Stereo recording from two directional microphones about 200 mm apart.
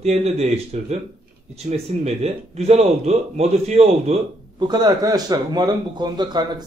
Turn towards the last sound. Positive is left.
turn(degrees=-20)  # may be behind; listen again after turning